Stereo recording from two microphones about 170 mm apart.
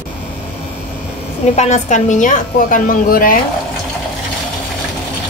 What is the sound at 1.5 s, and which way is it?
A woman's voice, 45° left (ahead or behind).